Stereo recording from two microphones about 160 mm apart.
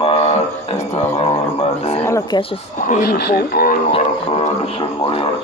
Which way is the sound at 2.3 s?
35° left (ahead or behind).